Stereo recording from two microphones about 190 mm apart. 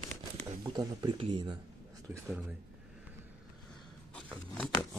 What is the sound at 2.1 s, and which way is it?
Speech, 15° right (ahead or behind).